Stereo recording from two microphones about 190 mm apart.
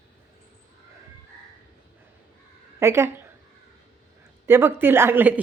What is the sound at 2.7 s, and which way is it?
Speech, 15° right (ahead or behind).